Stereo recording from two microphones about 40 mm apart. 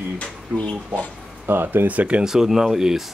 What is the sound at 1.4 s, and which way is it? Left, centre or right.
Speech, right.